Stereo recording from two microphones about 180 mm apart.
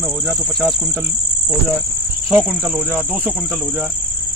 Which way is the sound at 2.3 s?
5° right (ahead or behind).